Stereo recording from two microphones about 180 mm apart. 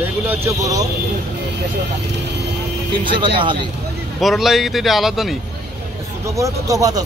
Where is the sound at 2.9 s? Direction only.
25° right (ahead or behind).